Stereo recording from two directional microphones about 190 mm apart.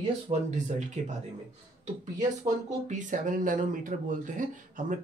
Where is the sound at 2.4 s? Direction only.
40° right (ahead or behind).